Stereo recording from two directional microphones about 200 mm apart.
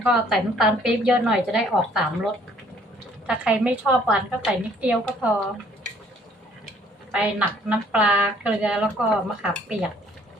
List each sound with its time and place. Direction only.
0.0 s speech: centre (ahead or behind)
3.2 s a woman's voice: 5° right (ahead or behind)
7.1 s speech: 5° right (ahead or behind)